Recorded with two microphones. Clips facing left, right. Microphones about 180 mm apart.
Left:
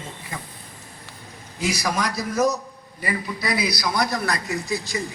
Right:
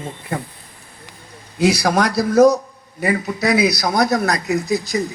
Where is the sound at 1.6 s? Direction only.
70° right (ahead or behind); by 2.5 s 90° right.